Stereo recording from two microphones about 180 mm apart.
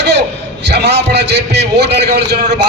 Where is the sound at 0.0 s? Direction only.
75° right (ahead or behind).